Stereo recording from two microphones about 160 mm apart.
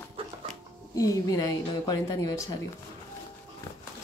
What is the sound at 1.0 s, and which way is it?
A woman's voice, 20° left (ahead or behind).